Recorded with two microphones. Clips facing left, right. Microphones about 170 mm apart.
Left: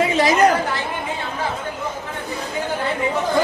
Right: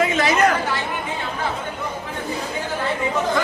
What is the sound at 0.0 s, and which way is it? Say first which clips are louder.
Chatter: left 2 dB; 35° left (ahead or behind).